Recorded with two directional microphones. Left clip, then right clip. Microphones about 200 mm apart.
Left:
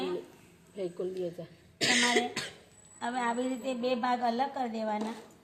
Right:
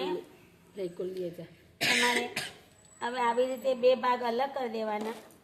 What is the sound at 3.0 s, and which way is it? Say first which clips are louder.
A woman's voice: right 4 dB; 30° right (ahead or behind).